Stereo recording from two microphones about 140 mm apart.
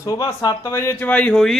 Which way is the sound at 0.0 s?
25° left (ahead or behind).